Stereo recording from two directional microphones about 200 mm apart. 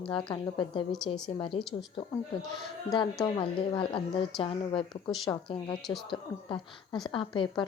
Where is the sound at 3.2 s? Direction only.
25° left (ahead or behind).